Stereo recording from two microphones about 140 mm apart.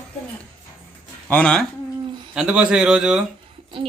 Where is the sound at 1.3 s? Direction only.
5° left (ahead or behind).